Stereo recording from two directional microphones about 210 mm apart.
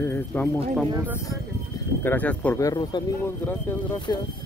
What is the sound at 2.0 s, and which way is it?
Speech, 10° left (ahead or behind).